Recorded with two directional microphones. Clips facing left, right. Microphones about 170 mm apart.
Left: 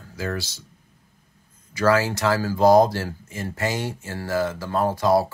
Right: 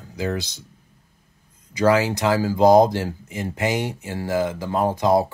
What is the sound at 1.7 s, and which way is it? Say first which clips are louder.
Speech: right 2 dB; 20° right (ahead or behind).